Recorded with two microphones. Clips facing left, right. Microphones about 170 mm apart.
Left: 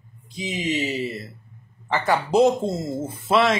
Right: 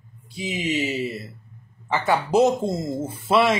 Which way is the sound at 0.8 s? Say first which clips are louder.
Even; centre (ahead or behind).